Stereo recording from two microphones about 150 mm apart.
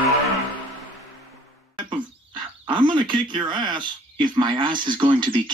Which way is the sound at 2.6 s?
30° right (ahead or behind).